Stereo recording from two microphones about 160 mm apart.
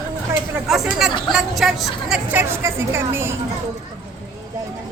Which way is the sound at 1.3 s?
Centre (ahead or behind).